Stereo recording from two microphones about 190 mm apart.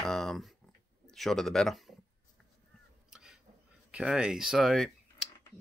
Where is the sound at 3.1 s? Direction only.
5° right (ahead or behind).